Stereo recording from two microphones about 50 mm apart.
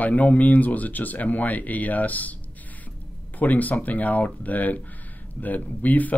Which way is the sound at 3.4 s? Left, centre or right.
Left.